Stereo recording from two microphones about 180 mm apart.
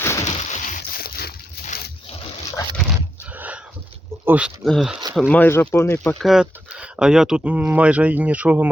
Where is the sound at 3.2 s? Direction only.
10° right (ahead or behind).